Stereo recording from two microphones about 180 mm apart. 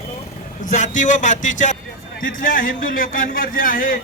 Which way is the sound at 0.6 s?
45° left (ahead or behind).